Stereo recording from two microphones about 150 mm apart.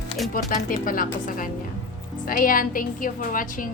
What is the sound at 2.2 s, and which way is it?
A woman's voice, 70° left (ahead or behind).